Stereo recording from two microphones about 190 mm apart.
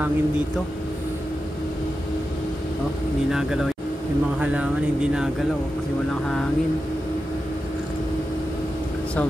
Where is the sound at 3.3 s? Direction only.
Centre (ahead or behind).